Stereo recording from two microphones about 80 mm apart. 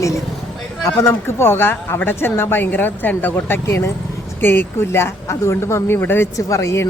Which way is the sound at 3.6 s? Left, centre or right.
Left.